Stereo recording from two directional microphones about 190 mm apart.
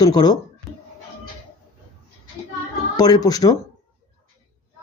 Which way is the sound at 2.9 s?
20° left (ahead or behind).